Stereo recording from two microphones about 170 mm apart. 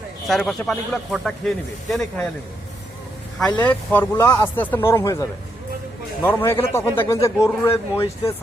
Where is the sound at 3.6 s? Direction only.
10° left (ahead or behind).